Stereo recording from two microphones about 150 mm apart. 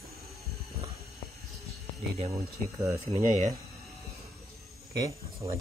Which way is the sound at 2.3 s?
20° right (ahead or behind).